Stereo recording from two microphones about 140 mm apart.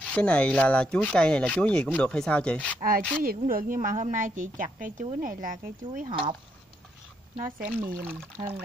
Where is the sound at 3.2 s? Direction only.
90° right; by 6.0 s 70° right (ahead or behind).